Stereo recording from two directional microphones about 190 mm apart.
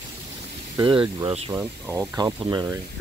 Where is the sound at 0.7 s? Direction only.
25° right (ahead or behind).